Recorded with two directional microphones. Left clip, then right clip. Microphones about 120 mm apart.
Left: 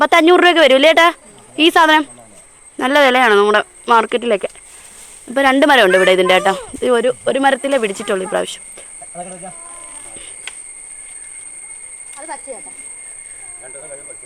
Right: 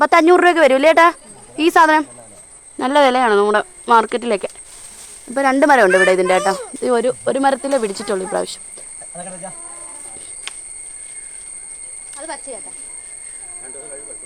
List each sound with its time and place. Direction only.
0.0 s speech: 10° left (ahead or behind); by 4.5 s 5° right (ahead or behind)
5.3 s speech: 15° left (ahead or behind)
6.8 s speech: 5° right (ahead or behind)
12.2 s a sound: 90° right